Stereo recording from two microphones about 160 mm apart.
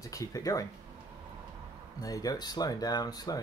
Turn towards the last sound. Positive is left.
turn(degrees=25)  # may be behind; listen again after turning